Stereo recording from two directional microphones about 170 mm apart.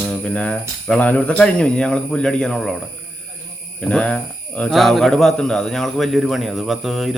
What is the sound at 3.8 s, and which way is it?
Speech, 5° left (ahead or behind).